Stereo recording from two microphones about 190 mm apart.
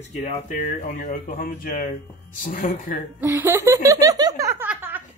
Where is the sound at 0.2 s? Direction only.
40° left (ahead or behind).